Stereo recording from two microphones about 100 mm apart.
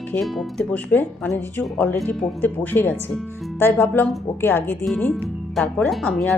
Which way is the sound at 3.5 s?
25° left (ahead or behind).